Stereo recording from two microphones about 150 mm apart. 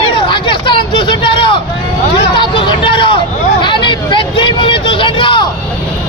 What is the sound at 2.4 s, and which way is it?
Vehicle, 35° left (ahead or behind).